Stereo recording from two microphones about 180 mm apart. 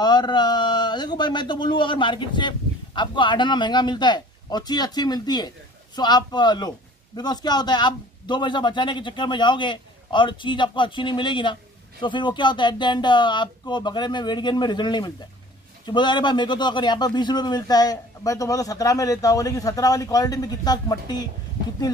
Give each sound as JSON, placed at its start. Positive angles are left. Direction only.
{"t": 0.0, "sound": "a man's voice", "side_deg": 25}